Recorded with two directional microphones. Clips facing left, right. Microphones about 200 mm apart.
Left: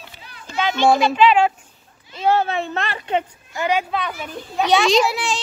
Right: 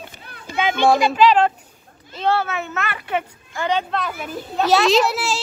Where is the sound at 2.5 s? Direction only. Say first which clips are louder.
Left 2 dB; 30° left (ahead or behind).